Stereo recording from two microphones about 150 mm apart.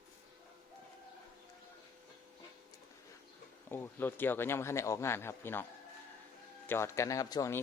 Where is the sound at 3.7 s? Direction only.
15° left (ahead or behind).